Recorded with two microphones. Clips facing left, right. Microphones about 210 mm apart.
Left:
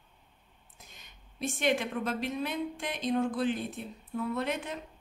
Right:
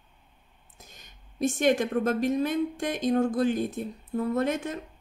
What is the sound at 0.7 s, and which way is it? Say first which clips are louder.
Speech: right 3 dB; 45° right (ahead or behind).